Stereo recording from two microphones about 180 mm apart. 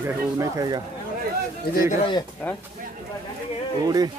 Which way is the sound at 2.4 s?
10° left (ahead or behind).